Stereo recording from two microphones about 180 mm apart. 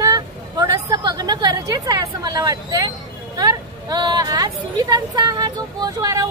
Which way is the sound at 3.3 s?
20° right (ahead or behind).